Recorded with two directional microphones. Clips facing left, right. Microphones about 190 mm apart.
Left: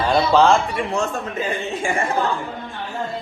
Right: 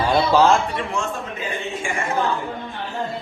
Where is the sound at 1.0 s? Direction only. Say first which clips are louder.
Left 4 dB; 40° left (ahead or behind).